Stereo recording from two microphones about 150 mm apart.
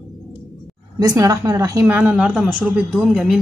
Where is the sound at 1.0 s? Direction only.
25° right (ahead or behind).